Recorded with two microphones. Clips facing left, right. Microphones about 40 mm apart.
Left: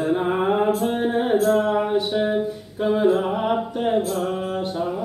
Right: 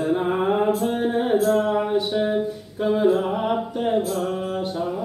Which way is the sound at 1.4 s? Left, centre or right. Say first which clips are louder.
Left 1 dB; centre.